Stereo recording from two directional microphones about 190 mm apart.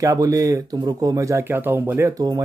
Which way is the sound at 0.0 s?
20° right (ahead or behind).